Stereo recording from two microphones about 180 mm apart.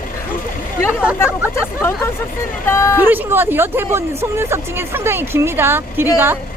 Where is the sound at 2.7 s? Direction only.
15° left (ahead or behind).